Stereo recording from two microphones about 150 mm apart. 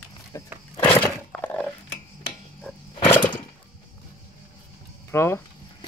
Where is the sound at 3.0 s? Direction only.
15° left (ahead or behind).